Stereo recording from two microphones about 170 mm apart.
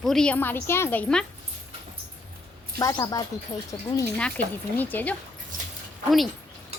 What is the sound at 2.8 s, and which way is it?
Speech, 20° left (ahead or behind).